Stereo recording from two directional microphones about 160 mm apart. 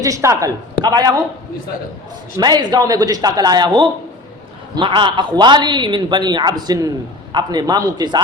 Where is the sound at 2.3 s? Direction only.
25° right (ahead or behind).